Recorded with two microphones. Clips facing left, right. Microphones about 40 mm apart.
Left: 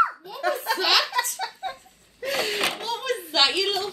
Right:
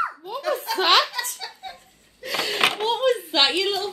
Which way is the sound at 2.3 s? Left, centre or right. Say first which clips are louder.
Right 3 dB; right.